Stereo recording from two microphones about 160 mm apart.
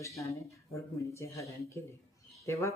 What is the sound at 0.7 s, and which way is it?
Speech, 20° left (ahead or behind).